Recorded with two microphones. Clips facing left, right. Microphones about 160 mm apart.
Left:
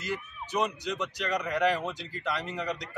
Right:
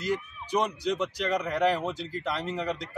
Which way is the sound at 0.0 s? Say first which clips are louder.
Right 5 dB; 35° right (ahead or behind).